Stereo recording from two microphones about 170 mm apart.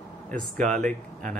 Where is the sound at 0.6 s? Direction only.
5° left (ahead or behind).